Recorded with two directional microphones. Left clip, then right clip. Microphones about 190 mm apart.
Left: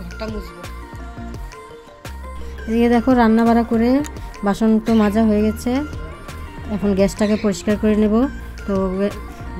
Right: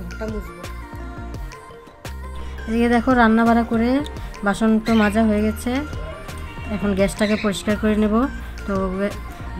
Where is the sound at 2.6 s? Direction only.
5° left (ahead or behind).